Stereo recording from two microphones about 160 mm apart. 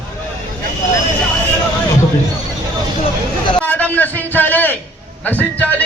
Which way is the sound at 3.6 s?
10° left (ahead or behind).